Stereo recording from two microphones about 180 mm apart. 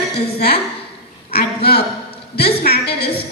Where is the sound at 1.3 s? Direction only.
60° left (ahead or behind).